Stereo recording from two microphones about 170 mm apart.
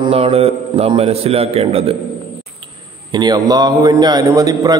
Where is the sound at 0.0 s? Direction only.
35° right (ahead or behind).